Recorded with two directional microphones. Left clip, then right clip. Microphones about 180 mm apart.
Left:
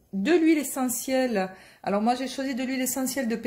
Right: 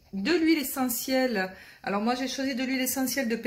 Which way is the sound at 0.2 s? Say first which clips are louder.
Left 3 dB; 40° left (ahead or behind).